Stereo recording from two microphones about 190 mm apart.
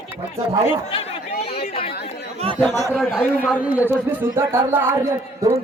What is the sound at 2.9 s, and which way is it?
Speech, 5° left (ahead or behind).